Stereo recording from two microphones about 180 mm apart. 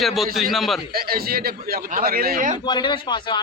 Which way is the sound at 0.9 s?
55° right (ahead or behind).